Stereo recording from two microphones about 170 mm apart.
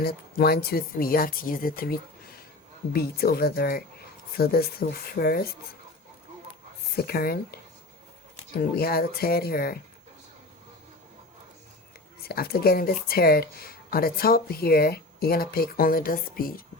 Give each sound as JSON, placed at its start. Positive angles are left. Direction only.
{"t": 0.0, "sound": "speech", "side_deg": 65}
{"t": 6.9, "sound": "speech", "side_deg": 60}
{"t": 12.2, "sound": "speech", "side_deg": 65}